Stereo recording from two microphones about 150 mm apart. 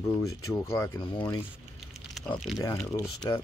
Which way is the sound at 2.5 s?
20° left (ahead or behind).